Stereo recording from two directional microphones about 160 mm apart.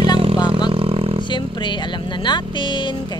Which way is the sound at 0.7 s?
35° right (ahead or behind).